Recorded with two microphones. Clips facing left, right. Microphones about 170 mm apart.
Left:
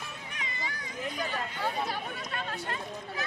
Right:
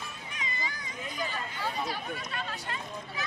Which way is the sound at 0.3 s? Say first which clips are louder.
Right 2 dB; 60° left (ahead or behind).